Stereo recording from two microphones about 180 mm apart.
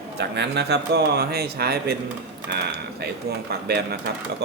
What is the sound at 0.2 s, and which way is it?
Speech, 70° right (ahead or behind).